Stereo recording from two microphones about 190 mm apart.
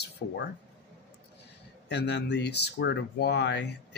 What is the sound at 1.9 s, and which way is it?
Speech, 65° left (ahead or behind).